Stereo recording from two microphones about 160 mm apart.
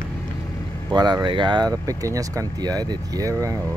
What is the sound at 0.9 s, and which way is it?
Speech, 25° right (ahead or behind).